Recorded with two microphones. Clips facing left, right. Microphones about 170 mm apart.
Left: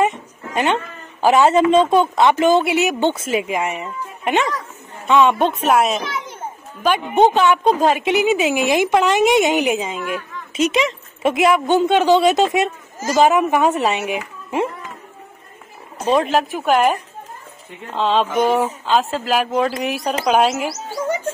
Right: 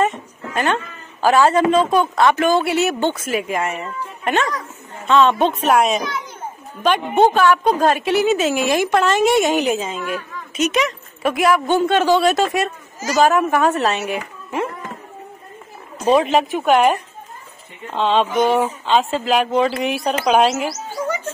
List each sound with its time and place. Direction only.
0.0 s dog: 15° left (ahead or behind)
1.2 s a woman's voice: 20° left (ahead or behind)
3.4 s speech: 15° left (ahead or behind)
7.2 s a woman's voice: 20° left (ahead or behind)
16.1 s speech: centre (ahead or behind)
17.9 s speech: centre (ahead or behind)